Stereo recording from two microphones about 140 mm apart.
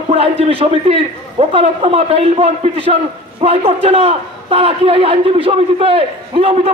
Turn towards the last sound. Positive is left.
turn(degrees=-40)  # may be behind; listen again after turning